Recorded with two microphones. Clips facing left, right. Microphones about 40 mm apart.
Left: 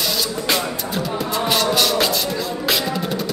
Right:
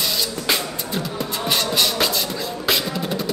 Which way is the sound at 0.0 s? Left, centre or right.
Centre.